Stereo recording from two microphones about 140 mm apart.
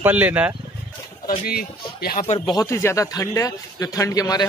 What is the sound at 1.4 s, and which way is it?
Speech, 90° left.